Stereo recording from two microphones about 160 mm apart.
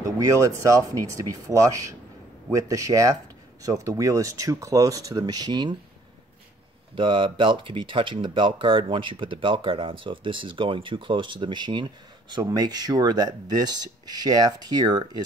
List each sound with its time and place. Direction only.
0.0 s speech: 20° right (ahead or behind)
7.0 s speech: 30° right (ahead or behind)